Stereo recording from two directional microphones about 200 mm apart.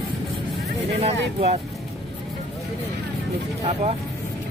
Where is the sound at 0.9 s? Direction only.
30° right (ahead or behind).